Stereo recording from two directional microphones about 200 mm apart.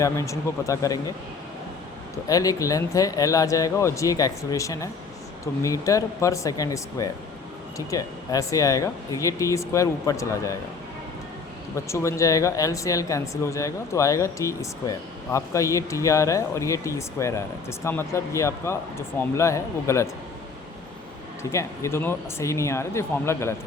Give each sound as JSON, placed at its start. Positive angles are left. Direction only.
{"t": 0.0, "sound": "speech", "side_deg": 15}
{"t": 2.2, "sound": "speech", "side_deg": 15}
{"t": 11.9, "sound": "speech", "side_deg": 15}
{"t": 21.5, "sound": "speech", "side_deg": 15}